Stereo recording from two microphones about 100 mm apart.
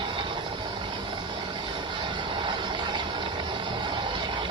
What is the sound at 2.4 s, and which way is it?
Vehicle, 50° right (ahead or behind).